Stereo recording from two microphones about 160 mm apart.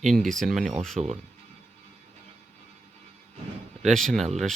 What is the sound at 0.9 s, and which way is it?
Speech, 45° right (ahead or behind).